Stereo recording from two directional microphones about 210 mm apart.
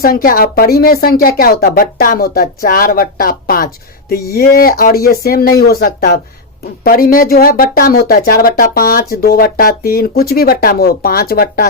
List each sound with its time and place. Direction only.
0.0 s speech: 45° left (ahead or behind)